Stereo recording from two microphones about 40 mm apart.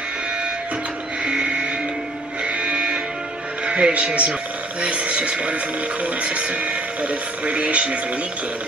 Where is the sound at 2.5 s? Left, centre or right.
Right.